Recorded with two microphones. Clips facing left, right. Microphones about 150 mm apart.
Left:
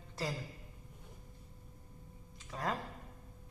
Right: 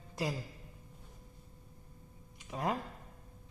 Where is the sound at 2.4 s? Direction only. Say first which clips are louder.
Right 3 dB; 20° right (ahead or behind).